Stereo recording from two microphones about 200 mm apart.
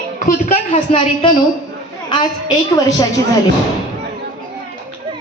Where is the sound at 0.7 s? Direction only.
25° left (ahead or behind).